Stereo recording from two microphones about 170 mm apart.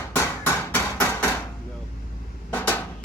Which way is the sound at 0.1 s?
10° left (ahead or behind).